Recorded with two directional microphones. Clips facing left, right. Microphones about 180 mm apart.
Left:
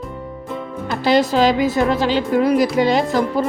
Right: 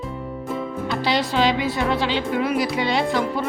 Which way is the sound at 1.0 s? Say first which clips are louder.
Left 6 dB; 45° left (ahead or behind).